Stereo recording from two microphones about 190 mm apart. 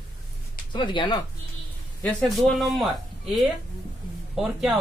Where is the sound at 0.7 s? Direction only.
25° left (ahead or behind).